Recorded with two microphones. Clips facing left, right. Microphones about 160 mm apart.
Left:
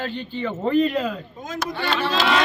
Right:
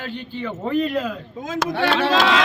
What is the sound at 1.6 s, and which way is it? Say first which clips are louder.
Speech: right 5 dB; 85° right.